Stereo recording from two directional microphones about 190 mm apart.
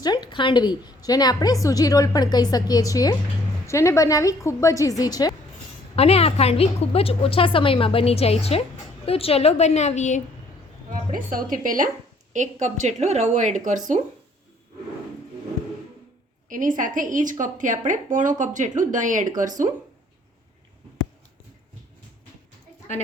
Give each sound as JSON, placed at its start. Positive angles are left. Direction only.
{"t": 0.0, "sound": "a woman's voice", "side_deg": 20}
{"t": 6.0, "sound": "a woman's voice", "side_deg": 30}
{"t": 11.1, "sound": "speech", "side_deg": -45}
{"t": 16.5, "sound": "speech", "side_deg": -45}